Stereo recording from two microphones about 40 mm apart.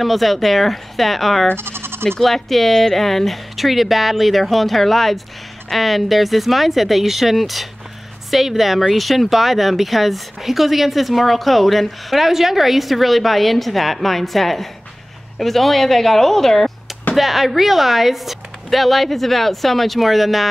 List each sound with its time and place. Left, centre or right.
0.0 s speech: centre
1.6 s bleat: right
2.2 s speech: centre
17.1 s speech: centre